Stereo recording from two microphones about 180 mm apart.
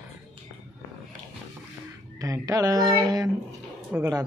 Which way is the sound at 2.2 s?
20° right (ahead or behind).